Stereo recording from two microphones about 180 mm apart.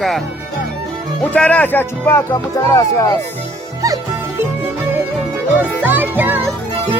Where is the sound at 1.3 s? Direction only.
5° left (ahead or behind).